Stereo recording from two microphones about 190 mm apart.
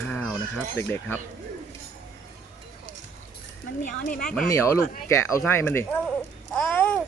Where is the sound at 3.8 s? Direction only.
45° left (ahead or behind).